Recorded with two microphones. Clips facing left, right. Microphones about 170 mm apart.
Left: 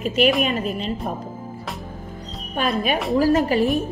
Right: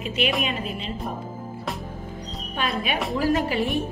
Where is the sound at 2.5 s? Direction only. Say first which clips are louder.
Left 5 dB; 40° left (ahead or behind).